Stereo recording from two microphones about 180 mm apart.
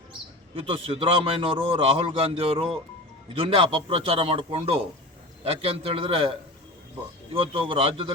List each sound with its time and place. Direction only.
0.1 s a man's voice: 30° right (ahead or behind)
7.3 s a man's voice: 30° right (ahead or behind)